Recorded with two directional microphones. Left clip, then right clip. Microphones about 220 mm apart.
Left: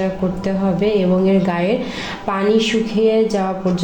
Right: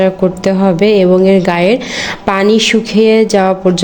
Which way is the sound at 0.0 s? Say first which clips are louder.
Right 10 dB; 40° right (ahead or behind).